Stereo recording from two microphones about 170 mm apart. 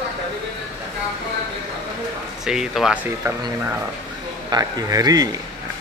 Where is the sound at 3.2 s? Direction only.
20° right (ahead or behind).